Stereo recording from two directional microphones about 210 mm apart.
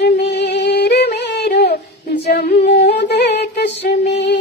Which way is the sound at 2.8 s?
55° left (ahead or behind).